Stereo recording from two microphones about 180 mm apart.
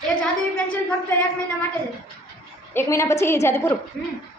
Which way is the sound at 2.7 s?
15° left (ahead or behind).